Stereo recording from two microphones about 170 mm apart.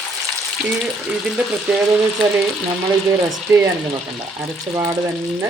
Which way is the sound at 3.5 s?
15° right (ahead or behind).